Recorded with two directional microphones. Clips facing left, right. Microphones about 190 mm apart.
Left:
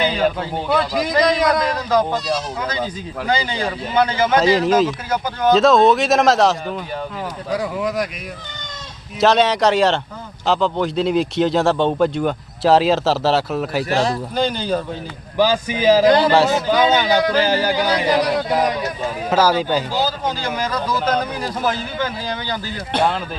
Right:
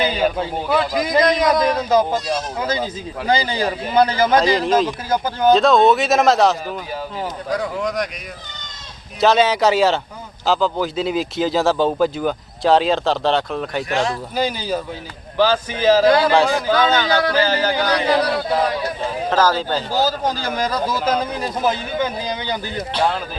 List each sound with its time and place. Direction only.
0.0 s a man's voice: 5° right (ahead or behind)
1.7 s speech: 20° right (ahead or behind)
3.2 s a man's voice: 35° right (ahead or behind)
4.4 s a man's voice: centre (ahead or behind)
5.0 s a man's voice: 30° right (ahead or behind)
5.5 s a man's voice: centre (ahead or behind)
9.2 s a man's voice: centre (ahead or behind)
13.9 s speech: 35° left (ahead or behind)
14.3 s speech: 5° right (ahead or behind)
15.4 s speech: 15° left (ahead or behind)
19.9 s a man's voice: 40° right (ahead or behind)
21.3 s speech: 20° right (ahead or behind)